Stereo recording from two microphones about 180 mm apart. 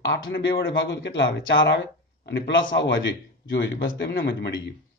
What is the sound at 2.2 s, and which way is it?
A man's voice, 75° left (ahead or behind).